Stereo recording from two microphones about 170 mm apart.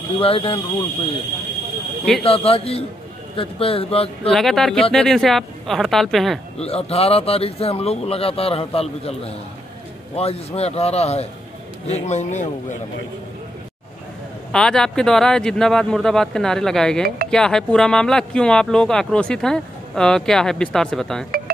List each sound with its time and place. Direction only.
0.2 s speech: 35° left (ahead or behind)
2.2 s speech: 35° left (ahead or behind)
4.3 s speech: centre (ahead or behind)
6.6 s a man's voice: 35° left (ahead or behind)
14.5 s speech: 5° left (ahead or behind)